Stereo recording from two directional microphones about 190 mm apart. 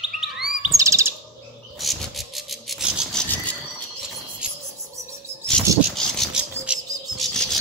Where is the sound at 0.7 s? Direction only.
15° right (ahead or behind).